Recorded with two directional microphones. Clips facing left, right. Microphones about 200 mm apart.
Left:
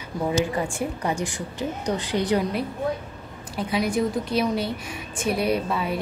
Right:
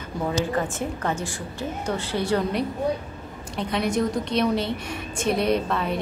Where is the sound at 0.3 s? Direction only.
10° left (ahead or behind).